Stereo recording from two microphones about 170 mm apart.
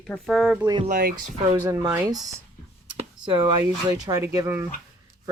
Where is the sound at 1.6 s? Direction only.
15° right (ahead or behind).